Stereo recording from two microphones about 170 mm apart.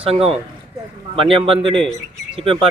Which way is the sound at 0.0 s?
35° right (ahead or behind).